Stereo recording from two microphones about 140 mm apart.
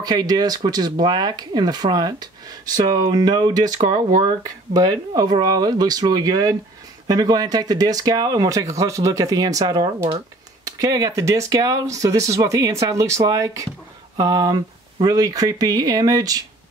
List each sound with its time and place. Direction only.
0.0 s speech: 30° right (ahead or behind)